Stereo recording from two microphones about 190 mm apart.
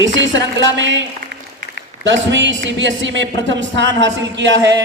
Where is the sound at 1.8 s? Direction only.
70° right (ahead or behind).